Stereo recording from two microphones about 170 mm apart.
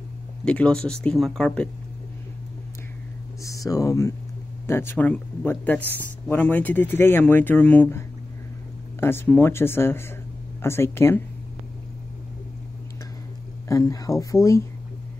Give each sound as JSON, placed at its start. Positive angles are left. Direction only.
{"t": 0.5, "sound": "speech", "side_deg": 5}
{"t": 3.4, "sound": "speech", "side_deg": 20}
{"t": 9.0, "sound": "speech", "side_deg": 15}
{"t": 13.7, "sound": "speech", "side_deg": 20}